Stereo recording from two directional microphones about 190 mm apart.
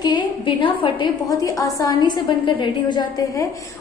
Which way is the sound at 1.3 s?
20° left (ahead or behind).